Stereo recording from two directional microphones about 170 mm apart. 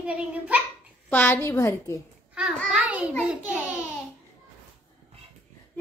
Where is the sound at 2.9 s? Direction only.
10° right (ahead or behind).